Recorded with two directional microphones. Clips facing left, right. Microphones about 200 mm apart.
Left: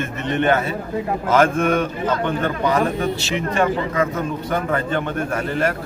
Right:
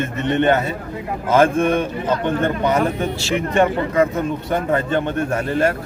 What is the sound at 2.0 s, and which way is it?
Speech, 20° right (ahead or behind).